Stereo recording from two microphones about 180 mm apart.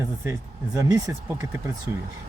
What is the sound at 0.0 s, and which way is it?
Speech, 15° right (ahead or behind).